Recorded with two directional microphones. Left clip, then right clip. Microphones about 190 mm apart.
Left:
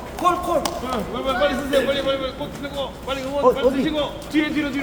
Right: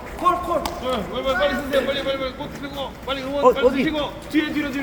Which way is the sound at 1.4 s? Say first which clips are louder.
Left 4 dB; 55° right (ahead or behind).